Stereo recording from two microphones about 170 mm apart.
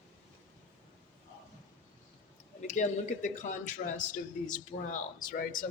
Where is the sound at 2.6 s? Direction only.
45° left (ahead or behind).